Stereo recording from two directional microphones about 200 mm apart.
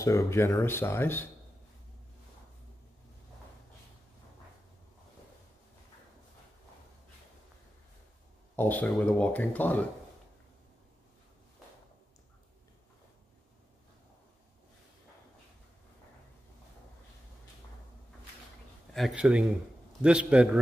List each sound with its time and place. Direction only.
0.0 s speech: 15° left (ahead or behind)
8.5 s speech: 10° left (ahead or behind)
18.9 s speech: 5° right (ahead or behind)